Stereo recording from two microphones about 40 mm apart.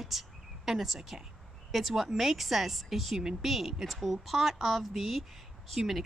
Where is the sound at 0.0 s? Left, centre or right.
Centre.